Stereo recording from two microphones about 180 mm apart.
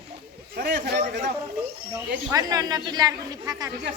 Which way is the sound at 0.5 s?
55° right (ahead or behind).